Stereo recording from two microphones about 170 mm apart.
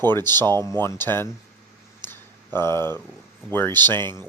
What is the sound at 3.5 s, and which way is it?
Speech, 10° left (ahead or behind).